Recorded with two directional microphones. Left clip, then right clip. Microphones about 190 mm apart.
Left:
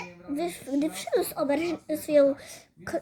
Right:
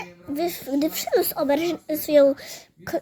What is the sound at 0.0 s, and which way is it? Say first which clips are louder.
Speech: right 5 dB; 50° right (ahead or behind).